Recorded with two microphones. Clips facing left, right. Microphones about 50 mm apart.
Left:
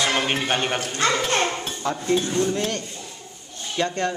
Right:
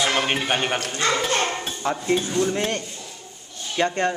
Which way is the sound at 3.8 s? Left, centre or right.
Right.